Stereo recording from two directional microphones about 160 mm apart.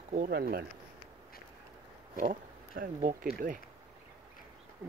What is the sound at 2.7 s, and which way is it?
Speech, 60° right (ahead or behind).